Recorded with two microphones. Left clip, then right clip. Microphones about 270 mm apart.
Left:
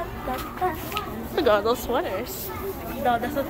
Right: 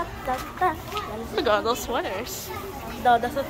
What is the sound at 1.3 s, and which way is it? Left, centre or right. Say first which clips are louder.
Speech: left 2 dB; centre.